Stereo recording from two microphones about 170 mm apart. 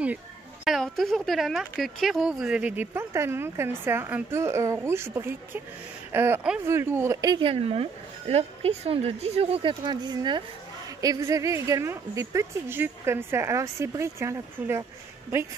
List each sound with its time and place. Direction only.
0.7 s speech: centre (ahead or behind); by 14.9 s 15° right (ahead or behind)